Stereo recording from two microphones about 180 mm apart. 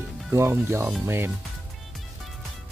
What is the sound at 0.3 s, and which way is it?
Speech, 15° right (ahead or behind).